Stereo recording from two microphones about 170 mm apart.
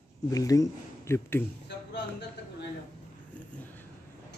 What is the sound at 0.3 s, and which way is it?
Speech, 20° left (ahead or behind).